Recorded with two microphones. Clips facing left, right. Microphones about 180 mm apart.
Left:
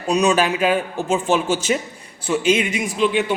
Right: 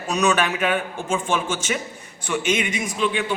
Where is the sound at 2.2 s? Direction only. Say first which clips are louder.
Left 5 dB; 30° left (ahead or behind).